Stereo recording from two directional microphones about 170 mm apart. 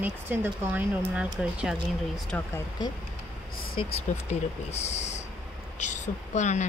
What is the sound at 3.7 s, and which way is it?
A woman's voice, 30° left (ahead or behind).